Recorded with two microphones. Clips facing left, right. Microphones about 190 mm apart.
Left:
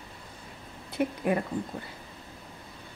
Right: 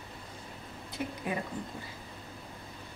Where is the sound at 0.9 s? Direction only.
55° left (ahead or behind).